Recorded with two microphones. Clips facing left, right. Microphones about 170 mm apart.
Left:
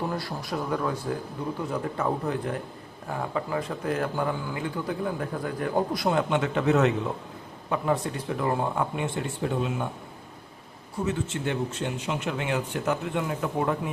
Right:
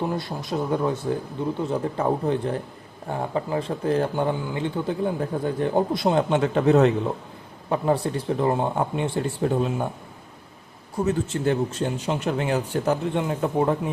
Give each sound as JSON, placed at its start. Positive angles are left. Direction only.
{"t": 0.0, "sound": "speech", "side_deg": -20}
{"t": 11.0, "sound": "speech", "side_deg": -40}